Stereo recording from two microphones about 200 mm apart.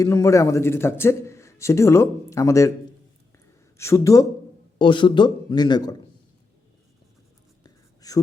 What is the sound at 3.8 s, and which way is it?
A man's voice, 15° left (ahead or behind).